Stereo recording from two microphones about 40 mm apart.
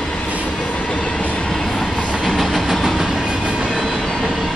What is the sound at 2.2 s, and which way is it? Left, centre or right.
Train, centre.